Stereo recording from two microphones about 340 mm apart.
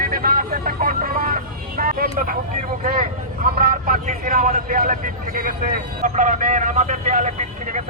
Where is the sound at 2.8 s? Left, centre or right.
Right.